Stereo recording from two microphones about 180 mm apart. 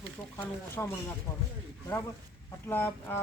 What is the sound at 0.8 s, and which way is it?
Speech, 15° left (ahead or behind).